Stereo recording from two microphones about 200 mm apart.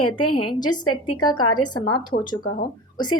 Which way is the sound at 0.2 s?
20° left (ahead or behind).